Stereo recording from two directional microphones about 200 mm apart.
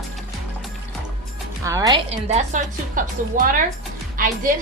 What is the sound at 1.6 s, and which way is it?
Speech, 15° right (ahead or behind).